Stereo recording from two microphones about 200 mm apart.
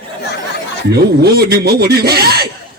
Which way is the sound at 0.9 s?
50° right (ahead or behind).